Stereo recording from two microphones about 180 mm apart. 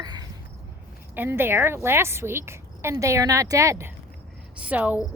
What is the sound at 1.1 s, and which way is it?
A woman's voice, 10° right (ahead or behind).